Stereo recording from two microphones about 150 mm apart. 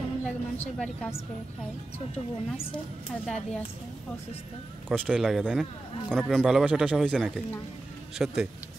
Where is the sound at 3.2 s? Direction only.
5° left (ahead or behind).